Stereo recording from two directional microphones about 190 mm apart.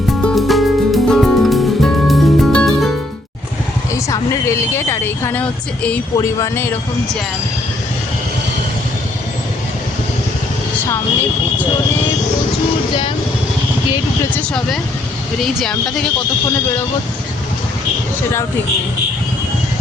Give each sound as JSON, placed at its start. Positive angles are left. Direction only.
{"t": 0.2, "sound": "music", "side_deg": 5}
{"t": 3.9, "sound": "speech", "side_deg": 15}
{"t": 15.4, "sound": "speech", "side_deg": 0}